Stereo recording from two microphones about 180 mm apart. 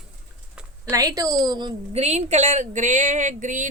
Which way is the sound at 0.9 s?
20° right (ahead or behind).